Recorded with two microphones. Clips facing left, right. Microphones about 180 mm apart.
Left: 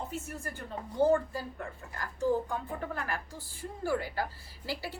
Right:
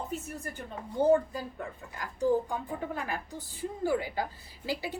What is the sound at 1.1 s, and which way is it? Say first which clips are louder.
A woman's voice: right 3 dB; 15° right (ahead or behind).